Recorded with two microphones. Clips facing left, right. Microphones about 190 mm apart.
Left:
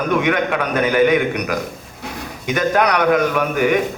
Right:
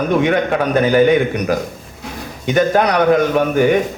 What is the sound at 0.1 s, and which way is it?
A man's voice, 30° right (ahead or behind).